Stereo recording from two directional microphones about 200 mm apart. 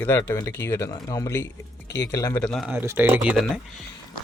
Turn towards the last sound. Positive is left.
turn(degrees=-5)  # may be behind; listen again after turning